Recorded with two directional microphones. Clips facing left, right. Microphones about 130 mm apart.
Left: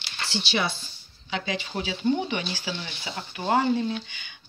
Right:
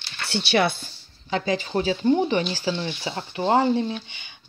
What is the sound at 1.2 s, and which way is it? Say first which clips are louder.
Speech: right 6 dB; 40° right (ahead or behind).